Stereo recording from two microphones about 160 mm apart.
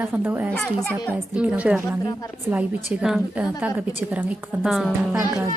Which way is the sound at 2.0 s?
25° left (ahead or behind).